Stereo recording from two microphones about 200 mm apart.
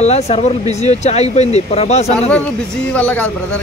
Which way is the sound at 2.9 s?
5° left (ahead or behind).